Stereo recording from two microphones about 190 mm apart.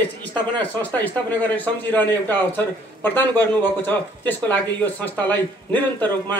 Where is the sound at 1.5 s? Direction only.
10° left (ahead or behind).